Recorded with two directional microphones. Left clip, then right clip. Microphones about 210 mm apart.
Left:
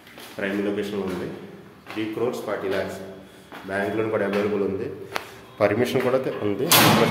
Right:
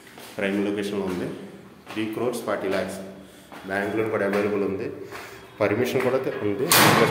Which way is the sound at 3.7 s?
5° left (ahead or behind).